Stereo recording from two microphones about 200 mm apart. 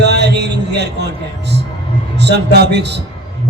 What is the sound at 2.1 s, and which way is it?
Speech, 60° right (ahead or behind).